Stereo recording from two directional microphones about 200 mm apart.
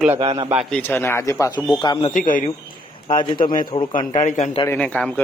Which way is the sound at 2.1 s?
40° left (ahead or behind).